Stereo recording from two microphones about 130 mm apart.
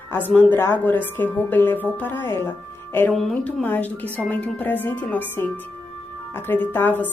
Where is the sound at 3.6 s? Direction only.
15° left (ahead or behind).